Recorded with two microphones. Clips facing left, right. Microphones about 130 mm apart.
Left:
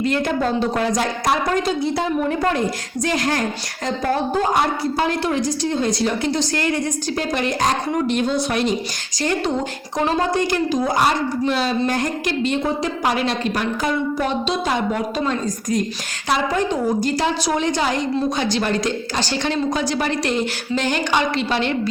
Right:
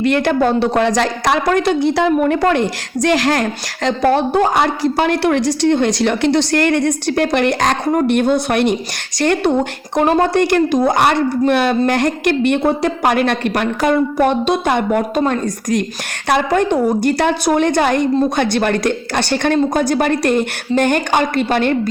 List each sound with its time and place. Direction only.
0.0 s a woman's voice: 70° right (ahead or behind); by 3.4 s 90° right
3.8 s a woman's voice: 75° right (ahead or behind); by 21.8 s 50° right (ahead or behind)